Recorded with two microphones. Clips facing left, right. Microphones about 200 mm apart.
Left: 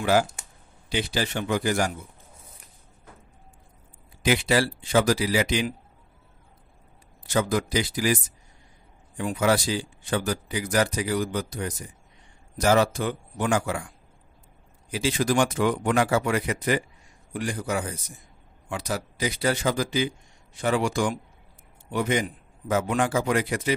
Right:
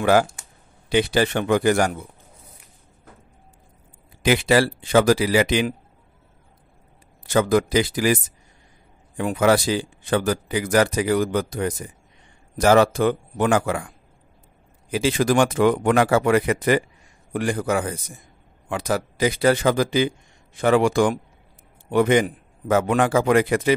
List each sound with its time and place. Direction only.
0.0 s a man's voice: 60° right (ahead or behind)
4.2 s a man's voice: 80° right; by 5.8 s 60° right (ahead or behind)
7.2 s a man's voice: 60° right (ahead or behind); by 10.9 s 90° right
11.0 s a man's voice: 55° right (ahead or behind); by 16.2 s 75° right (ahead or behind)
16.2 s speech: 60° right (ahead or behind)
17.6 s speech: 90° right
18.7 s speech: 55° right (ahead or behind)
19.1 s speech: 90° right
19.7 s a man's voice: 60° right (ahead or behind)